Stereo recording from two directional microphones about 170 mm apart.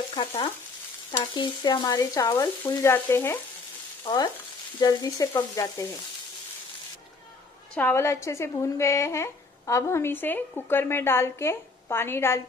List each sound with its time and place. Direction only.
0.2 s frying: 25° left (ahead or behind)
4.0 s stir: 25° left (ahead or behind)
4.7 s frying: 20° left (ahead or behind)
7.7 s speech: 15° left (ahead or behind)